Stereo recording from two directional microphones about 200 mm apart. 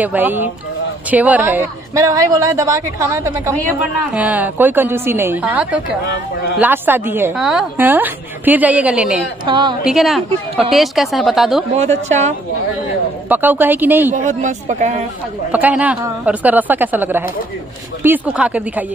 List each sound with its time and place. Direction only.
0.0 s a woman's voice: 10° right (ahead or behind)
6.0 s speech: 55° left (ahead or behind)
6.6 s a woman's voice: 10° right (ahead or behind)
9.5 s a woman's voice: 25° right (ahead or behind)
9.8 s speech: centre (ahead or behind)
11.7 s speech: 35° right (ahead or behind)
13.3 s a woman's voice: 10° right (ahead or behind)
14.1 s speech: 40° right (ahead or behind)
15.5 s a woman's voice: 5° right (ahead or behind)